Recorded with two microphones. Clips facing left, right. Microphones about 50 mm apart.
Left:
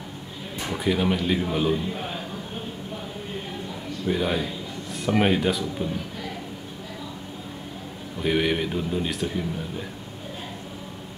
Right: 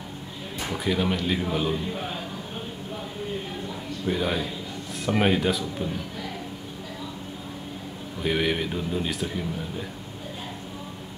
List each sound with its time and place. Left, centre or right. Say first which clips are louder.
0.6 s speech: left 2 dB; centre
4.0 s speech: left 2 dB; centre
8.2 s speech: left 2 dB; centre